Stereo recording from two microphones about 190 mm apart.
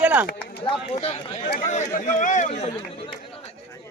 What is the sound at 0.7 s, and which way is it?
Speech, 30° left (ahead or behind).